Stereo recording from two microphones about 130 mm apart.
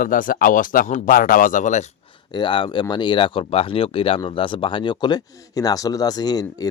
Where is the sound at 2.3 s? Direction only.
40° left (ahead or behind).